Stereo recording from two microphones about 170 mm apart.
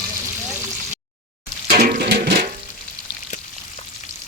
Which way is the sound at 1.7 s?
65° right (ahead or behind).